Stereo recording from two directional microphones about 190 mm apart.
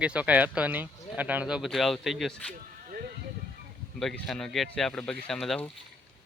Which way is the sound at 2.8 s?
50° right (ahead or behind).